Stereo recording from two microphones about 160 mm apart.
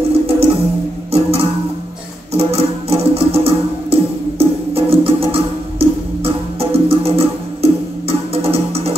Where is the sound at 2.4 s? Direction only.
40° right (ahead or behind).